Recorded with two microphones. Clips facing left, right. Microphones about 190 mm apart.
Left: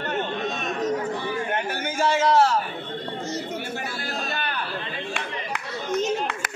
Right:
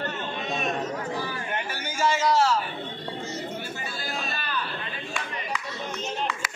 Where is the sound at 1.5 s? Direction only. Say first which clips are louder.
Left 5 dB; 55° left (ahead or behind).